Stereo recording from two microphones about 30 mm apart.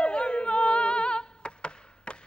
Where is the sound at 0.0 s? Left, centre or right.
Left.